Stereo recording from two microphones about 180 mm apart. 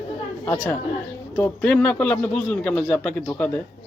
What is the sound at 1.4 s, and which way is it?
A woman's voice, 5° left (ahead or behind).